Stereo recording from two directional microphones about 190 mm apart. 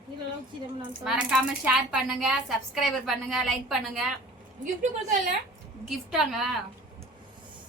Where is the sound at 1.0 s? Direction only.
5° right (ahead or behind).